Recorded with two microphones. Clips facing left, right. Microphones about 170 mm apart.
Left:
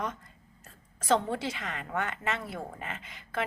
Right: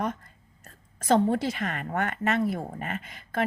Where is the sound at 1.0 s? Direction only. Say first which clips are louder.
Right 5 dB; 45° right (ahead or behind).